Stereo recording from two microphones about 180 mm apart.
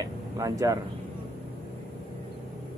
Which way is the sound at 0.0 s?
20° right (ahead or behind).